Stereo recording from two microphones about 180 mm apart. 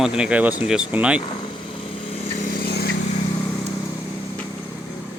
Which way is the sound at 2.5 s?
60° left (ahead or behind).